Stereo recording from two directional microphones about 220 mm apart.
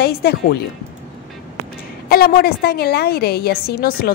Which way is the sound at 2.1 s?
45° left (ahead or behind).